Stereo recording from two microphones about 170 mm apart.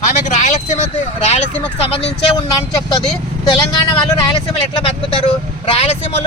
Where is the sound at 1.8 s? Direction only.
35° left (ahead or behind).